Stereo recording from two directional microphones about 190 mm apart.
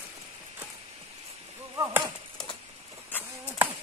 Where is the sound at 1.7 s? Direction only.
15° right (ahead or behind).